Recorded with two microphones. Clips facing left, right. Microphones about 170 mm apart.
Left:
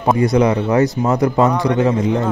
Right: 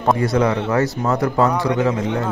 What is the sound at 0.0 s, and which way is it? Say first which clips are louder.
A man's voice: left 3 dB; 15° left (ahead or behind).